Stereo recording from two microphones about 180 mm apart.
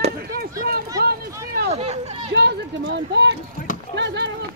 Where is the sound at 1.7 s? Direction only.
35° right (ahead or behind).